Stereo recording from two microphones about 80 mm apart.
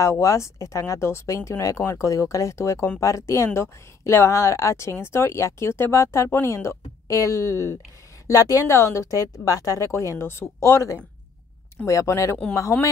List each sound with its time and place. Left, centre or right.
0.0 s speech: left